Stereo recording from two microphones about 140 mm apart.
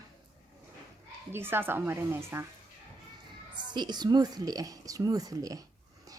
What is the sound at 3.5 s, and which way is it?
Speech, 30° right (ahead or behind).